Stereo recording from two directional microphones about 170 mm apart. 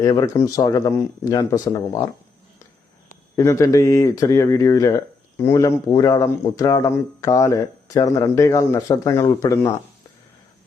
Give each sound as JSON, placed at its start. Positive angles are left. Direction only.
{"t": 0.0, "sound": "speech", "side_deg": 20}
{"t": 3.3, "sound": "speech", "side_deg": 15}